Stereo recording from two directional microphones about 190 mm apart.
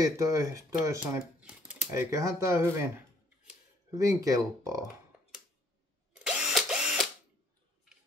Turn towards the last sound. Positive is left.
turn(degrees=-5)  # may be behind; listen again after turning